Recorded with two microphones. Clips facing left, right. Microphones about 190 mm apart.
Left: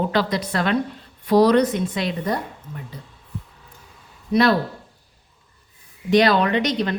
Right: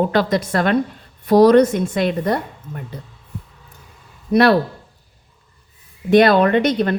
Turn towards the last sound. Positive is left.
turn(degrees=-55)  # may be behind; listen again after turning